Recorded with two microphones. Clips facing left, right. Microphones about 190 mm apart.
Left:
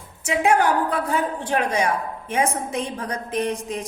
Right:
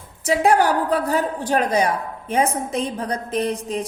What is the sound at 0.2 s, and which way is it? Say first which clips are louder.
A woman's voice: right 2 dB; 35° right (ahead or behind).